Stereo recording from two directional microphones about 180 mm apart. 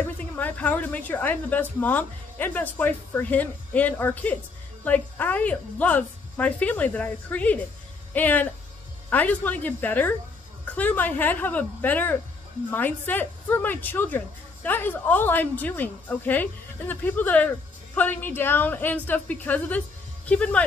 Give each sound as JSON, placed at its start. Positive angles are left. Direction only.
{"t": 0.0, "sound": "a woman's voice", "side_deg": 10}